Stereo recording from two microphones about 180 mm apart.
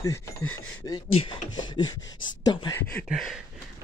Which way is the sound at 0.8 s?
25° left (ahead or behind).